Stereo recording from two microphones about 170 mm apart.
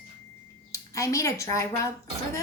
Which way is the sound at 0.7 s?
20° left (ahead or behind).